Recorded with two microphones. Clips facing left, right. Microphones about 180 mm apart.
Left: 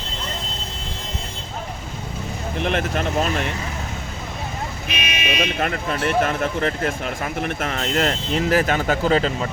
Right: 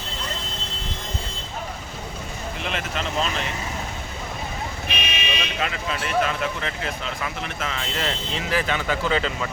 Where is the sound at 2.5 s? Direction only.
55° left (ahead or behind).